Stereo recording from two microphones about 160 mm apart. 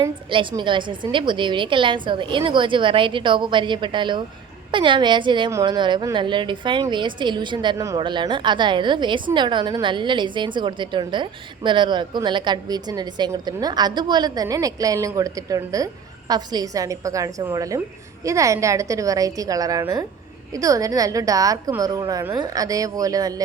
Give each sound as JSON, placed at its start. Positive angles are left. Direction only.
{"t": 0.3, "sound": "a woman's voice", "side_deg": -30}